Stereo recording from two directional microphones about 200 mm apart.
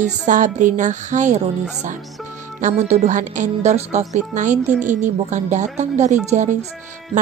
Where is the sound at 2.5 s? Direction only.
35° right (ahead or behind).